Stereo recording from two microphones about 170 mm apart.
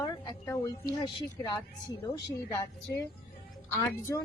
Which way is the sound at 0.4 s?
15° left (ahead or behind).